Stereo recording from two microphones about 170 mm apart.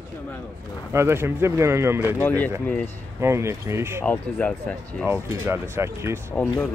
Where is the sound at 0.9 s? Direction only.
15° right (ahead or behind).